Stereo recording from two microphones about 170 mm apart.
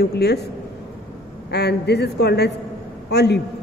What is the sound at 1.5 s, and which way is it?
A man's voice, 75° left (ahead or behind).